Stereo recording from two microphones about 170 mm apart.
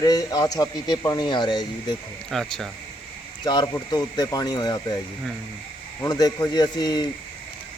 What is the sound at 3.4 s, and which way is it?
A man's voice, 25° left (ahead or behind).